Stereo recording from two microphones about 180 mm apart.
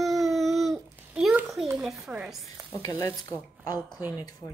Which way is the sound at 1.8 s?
5° right (ahead or behind).